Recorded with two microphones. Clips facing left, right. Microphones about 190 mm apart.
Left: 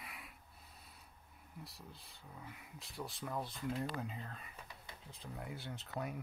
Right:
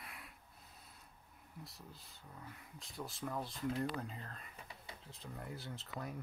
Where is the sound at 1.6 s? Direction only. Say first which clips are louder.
Even; centre (ahead or behind).